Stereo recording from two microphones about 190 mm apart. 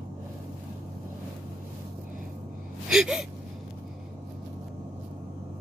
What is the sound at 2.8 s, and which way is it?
Gasp, 5° right (ahead or behind).